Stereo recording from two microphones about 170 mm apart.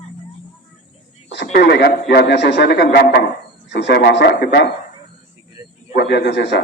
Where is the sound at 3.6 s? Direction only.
85° left; by 4.7 s 70° left (ahead or behind).